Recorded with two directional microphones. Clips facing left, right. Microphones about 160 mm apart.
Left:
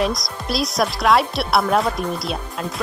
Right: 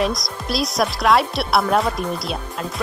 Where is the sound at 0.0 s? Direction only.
Centre (ahead or behind).